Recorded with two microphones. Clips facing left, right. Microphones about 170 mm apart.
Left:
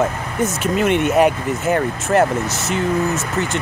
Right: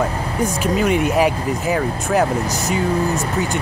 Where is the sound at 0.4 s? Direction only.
Centre (ahead or behind).